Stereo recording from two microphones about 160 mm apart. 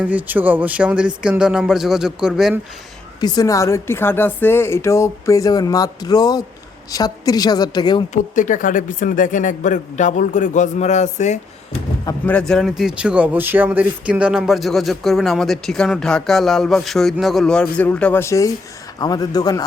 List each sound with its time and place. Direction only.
0.0 s speech: 10° right (ahead or behind)
3.2 s speech: 25° left (ahead or behind)
8.1 s speech: 55° left (ahead or behind)
12.2 s speech: 5° left (ahead or behind); by 19.6 s 25° left (ahead or behind)